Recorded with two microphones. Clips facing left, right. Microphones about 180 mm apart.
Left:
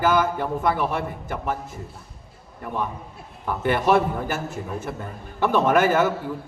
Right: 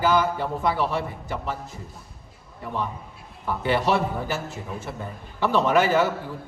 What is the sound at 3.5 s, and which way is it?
A man's voice, 50° left (ahead or behind).